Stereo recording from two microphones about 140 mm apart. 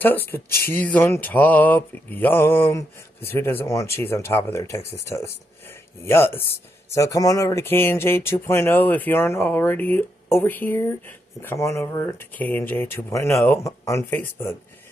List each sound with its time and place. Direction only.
0.0 s speech: 15° left (ahead or behind)